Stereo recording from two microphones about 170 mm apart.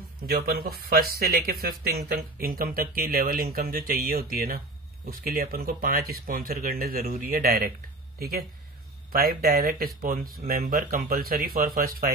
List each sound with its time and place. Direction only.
0.3 s speech: 60° right (ahead or behind)